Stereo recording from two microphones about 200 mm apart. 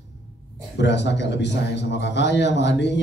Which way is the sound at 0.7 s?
60° left (ahead or behind).